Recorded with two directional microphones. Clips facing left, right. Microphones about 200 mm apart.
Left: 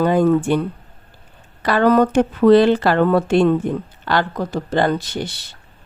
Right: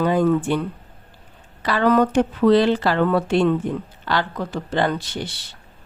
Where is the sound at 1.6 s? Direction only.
45° left (ahead or behind).